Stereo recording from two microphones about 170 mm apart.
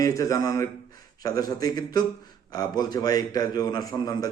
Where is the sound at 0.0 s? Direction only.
20° left (ahead or behind).